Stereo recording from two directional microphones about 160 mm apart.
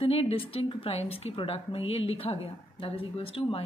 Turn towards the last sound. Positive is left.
turn(degrees=35)  # may be behind; listen again after turning